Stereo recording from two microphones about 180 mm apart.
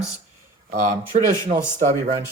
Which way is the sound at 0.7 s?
45° right (ahead or behind).